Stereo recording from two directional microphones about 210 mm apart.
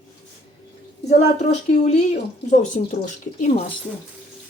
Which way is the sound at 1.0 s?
35° left (ahead or behind).